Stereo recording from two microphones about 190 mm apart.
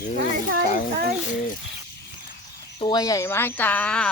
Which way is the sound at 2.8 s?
20° left (ahead or behind).